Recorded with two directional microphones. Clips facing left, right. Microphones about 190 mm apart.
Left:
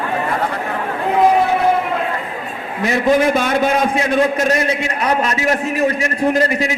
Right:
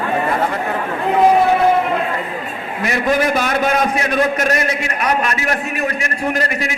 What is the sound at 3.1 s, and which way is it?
A man's voice, 25° left (ahead or behind).